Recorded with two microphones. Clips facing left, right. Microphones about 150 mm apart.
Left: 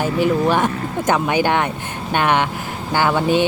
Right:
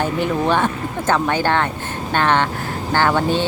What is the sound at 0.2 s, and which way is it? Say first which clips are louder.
Speech: left 3 dB; 10° left (ahead or behind).